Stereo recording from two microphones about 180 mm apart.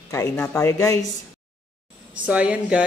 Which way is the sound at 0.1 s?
15° left (ahead or behind).